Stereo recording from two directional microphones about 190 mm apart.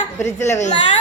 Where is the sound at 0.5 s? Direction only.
40° left (ahead or behind).